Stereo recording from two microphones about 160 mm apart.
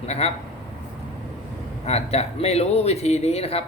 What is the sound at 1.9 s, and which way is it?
Speech, 40° left (ahead or behind).